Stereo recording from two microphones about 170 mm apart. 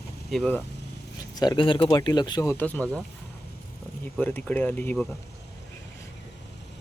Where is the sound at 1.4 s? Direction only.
25° left (ahead or behind); by 3.0 s 10° left (ahead or behind).